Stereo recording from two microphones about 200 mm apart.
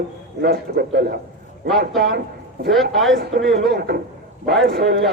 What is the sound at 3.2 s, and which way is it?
A man's voice, 55° right (ahead or behind).